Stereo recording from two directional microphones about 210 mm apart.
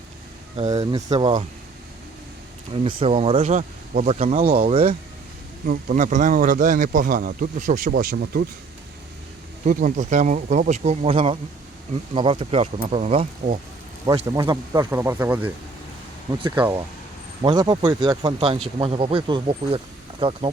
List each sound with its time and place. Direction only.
0.7 s speech: 15° right (ahead or behind)
2.7 s speech: 25° right (ahead or behind); by 8.4 s 45° right (ahead or behind)
9.6 s speech: 35° right (ahead or behind)
14.1 s speech: 20° right (ahead or behind)
16.6 s speech: 10° right (ahead or behind)
17.4 s speech: 20° right (ahead or behind)